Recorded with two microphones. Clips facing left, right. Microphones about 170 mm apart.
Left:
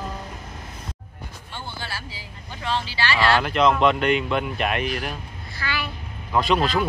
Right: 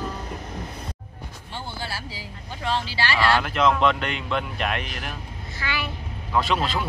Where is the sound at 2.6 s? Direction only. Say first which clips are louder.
Even; 40° right (ahead or behind).